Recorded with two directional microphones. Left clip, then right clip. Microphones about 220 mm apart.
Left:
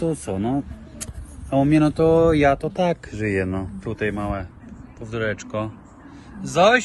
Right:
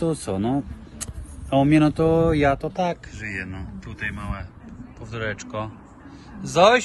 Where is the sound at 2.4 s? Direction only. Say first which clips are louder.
Left 3 dB; 30° left (ahead or behind).